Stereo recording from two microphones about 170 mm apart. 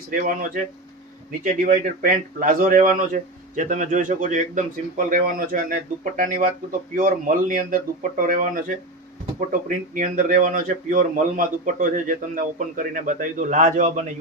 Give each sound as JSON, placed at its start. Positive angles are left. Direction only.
{"t": 0.1, "sound": "speech", "side_deg": -55}
{"t": 1.6, "sound": "a man's voice", "side_deg": -50}